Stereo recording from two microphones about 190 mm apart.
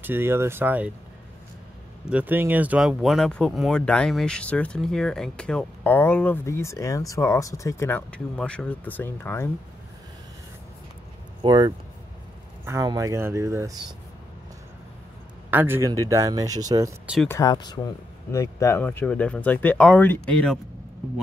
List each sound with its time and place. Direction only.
0.0 s speech: 10° right (ahead or behind)
2.0 s speech: 10° right (ahead or behind); by 9.5 s 10° left (ahead or behind)
11.4 s speech: 20° right (ahead or behind)
15.5 s speech: 10° right (ahead or behind)
17.0 s speech: 5° right (ahead or behind)
17.3 s speech: 20° left (ahead or behind)